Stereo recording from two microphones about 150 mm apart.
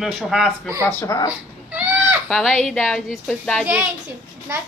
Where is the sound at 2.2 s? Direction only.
Centre (ahead or behind).